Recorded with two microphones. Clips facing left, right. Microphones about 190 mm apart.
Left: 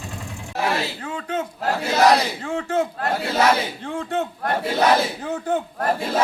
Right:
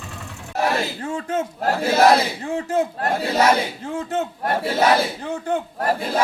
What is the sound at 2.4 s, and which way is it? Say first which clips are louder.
Speech: right 1 dB; 35° right (ahead or behind).